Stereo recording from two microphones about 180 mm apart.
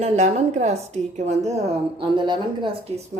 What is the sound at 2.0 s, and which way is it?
Speech, 25° right (ahead or behind).